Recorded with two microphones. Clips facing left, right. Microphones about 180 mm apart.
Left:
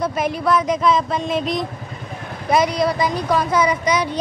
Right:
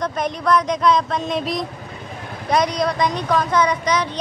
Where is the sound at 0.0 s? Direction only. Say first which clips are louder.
Left 2 dB; 5° left (ahead or behind).